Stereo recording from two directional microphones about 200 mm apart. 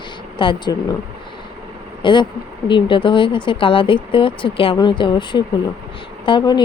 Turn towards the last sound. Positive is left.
turn(degrees=20)  # may be behind; listen again after turning